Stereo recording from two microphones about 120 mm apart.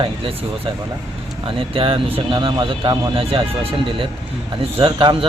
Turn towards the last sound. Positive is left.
turn(degrees=-45)  # may be behind; listen again after turning